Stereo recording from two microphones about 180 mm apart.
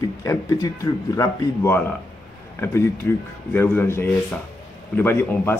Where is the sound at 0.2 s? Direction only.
20° left (ahead or behind).